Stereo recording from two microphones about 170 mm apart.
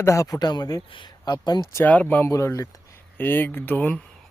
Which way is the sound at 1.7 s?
15° left (ahead or behind).